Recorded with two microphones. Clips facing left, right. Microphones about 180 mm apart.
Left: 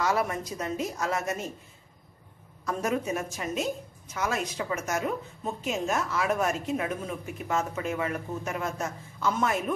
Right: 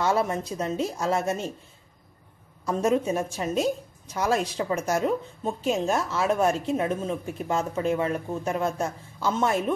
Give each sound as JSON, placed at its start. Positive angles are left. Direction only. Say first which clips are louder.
{"t": 0.0, "sound": "a woman's voice", "louder": "right 3 dB", "side_deg": -25}
{"t": 2.6, "sound": "a woman's voice", "louder": "right 5 dB", "side_deg": -25}